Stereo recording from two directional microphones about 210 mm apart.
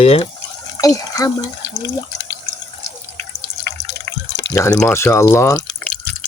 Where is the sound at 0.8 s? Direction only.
15° left (ahead or behind).